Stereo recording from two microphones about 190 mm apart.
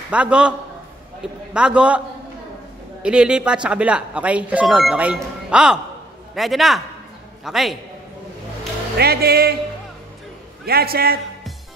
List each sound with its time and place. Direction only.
0.1 s speech: 5° right (ahead or behind)
8.9 s speech: 55° right (ahead or behind)
10.6 s a man's voice: 55° right (ahead or behind)